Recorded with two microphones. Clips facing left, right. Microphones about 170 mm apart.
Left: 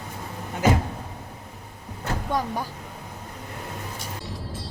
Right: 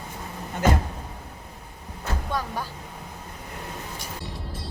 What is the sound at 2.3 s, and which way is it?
Speech, 15° left (ahead or behind).